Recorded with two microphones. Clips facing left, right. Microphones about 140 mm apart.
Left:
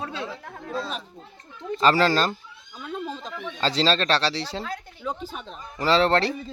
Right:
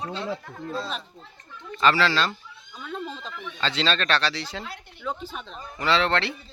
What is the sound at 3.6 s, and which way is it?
A man's voice, 35° left (ahead or behind).